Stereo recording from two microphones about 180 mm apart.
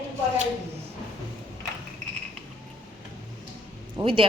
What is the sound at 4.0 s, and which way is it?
Speech, 30° right (ahead or behind).